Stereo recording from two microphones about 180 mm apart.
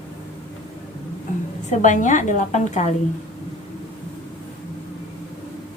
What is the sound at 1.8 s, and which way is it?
A woman's voice, 45° left (ahead or behind).